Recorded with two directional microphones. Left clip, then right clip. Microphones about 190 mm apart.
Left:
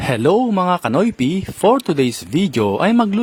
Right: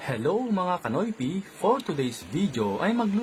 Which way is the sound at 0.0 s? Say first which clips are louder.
Left 12 dB; 55° left (ahead or behind).